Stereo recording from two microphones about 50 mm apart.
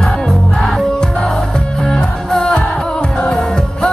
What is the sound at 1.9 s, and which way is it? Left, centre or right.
Music, centre.